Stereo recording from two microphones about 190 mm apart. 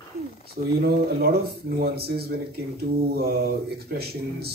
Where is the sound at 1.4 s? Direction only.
55° right (ahead or behind).